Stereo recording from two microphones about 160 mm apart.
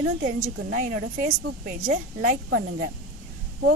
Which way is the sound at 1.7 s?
55° right (ahead or behind).